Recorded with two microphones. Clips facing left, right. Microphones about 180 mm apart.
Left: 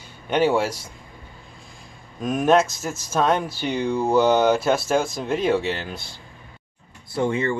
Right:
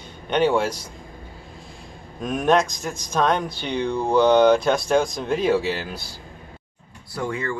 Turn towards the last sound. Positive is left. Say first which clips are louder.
# left 5 dB
turn(degrees=25)  # may be behind; listen again after turning